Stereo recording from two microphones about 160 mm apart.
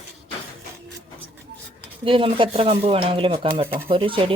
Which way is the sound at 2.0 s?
35° right (ahead or behind).